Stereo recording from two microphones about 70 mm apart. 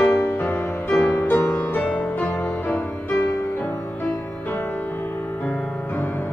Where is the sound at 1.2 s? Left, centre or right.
Left.